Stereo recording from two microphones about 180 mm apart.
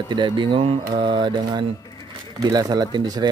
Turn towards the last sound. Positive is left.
turn(degrees=-25)  # may be behind; listen again after turning